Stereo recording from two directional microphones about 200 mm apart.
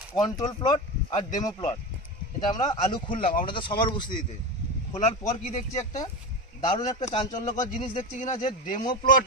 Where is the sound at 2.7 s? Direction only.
25° left (ahead or behind).